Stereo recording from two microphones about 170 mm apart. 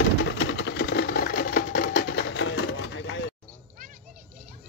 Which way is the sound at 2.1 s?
85° left.